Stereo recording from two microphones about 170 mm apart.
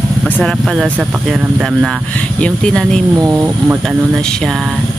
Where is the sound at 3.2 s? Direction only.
20° right (ahead or behind).